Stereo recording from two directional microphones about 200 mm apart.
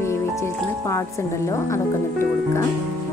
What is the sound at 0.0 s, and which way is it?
Speech, 15° left (ahead or behind).